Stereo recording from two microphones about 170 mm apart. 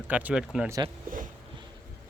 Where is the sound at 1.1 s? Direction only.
55° right (ahead or behind).